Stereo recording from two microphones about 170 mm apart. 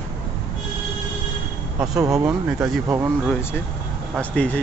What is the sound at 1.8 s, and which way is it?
Speech, 20° right (ahead or behind).